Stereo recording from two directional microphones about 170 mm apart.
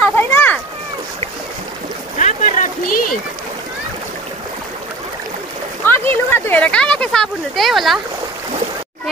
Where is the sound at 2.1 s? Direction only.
45° left (ahead or behind).